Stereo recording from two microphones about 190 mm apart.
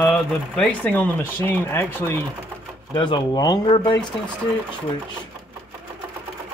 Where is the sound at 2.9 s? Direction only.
25° left (ahead or behind).